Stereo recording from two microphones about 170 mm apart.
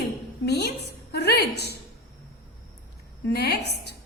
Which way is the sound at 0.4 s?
75° left (ahead or behind).